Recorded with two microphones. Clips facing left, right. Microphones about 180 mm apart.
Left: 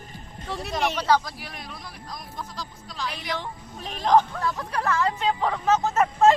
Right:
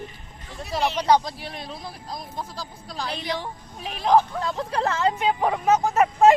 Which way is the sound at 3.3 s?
10° right (ahead or behind).